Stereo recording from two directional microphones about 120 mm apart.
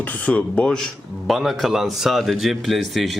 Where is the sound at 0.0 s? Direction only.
10° left (ahead or behind).